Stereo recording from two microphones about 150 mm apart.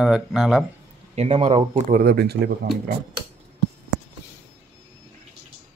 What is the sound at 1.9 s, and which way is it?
Speech, 80° right.